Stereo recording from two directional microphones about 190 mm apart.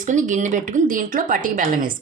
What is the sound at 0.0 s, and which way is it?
A woman's voice, 40° right (ahead or behind).